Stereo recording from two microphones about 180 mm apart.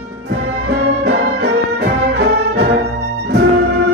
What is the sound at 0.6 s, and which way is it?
Music, 65° right (ahead or behind).